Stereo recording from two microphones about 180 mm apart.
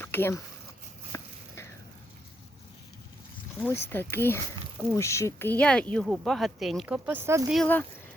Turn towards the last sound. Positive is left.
turn(degrees=5)  # may be behind; listen again after turning